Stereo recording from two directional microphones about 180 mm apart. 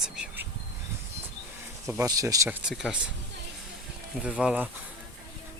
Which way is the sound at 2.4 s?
5° right (ahead or behind).